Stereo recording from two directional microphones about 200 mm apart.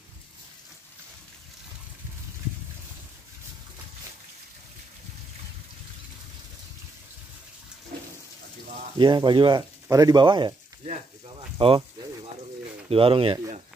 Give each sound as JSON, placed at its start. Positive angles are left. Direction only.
{"t": 8.9, "sound": "speech", "side_deg": -20}
{"t": 11.5, "sound": "speech", "side_deg": -25}
{"t": 12.9, "sound": "speech", "side_deg": -25}